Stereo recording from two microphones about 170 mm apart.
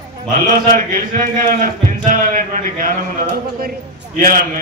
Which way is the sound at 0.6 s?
50° right (ahead or behind).